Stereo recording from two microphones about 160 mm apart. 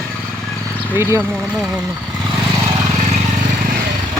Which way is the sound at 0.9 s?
15° right (ahead or behind).